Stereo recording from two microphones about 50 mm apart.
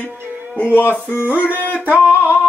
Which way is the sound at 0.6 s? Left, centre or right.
Left.